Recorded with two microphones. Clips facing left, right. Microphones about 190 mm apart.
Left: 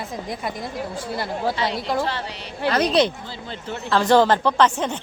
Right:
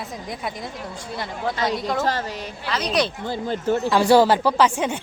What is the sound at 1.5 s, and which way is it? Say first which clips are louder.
Speech: even; 45° right (ahead or behind).